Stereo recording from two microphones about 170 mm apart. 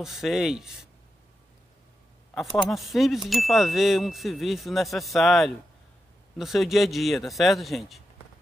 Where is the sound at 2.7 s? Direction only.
Centre (ahead or behind).